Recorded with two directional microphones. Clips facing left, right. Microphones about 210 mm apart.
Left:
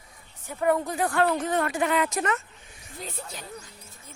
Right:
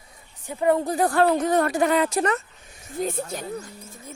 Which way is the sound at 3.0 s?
50° right (ahead or behind).